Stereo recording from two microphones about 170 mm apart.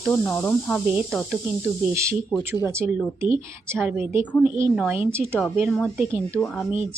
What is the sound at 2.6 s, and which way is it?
Speech, 15° right (ahead or behind).